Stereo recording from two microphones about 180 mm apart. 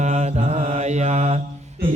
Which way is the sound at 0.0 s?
40° right (ahead or behind).